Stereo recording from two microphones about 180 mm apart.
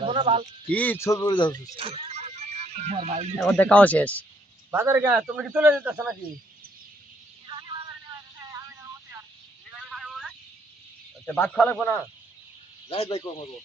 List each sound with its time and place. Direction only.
0.0 s a sound: 30° right (ahead or behind)
0.7 s speech: 10° left (ahead or behind); by 1.6 s 25° left (ahead or behind)
1.7 s music: 30° right (ahead or behind)
3.4 s speech: 5° left (ahead or behind)
4.7 s a man's voice: 10° right (ahead or behind)
10.0 s a sound: centre (ahead or behind)
11.3 s speech: 10° left (ahead or behind)
12.9 s speech: 35° left (ahead or behind)